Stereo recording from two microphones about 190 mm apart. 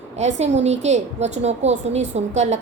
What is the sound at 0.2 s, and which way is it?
A woman's voice, 35° right (ahead or behind).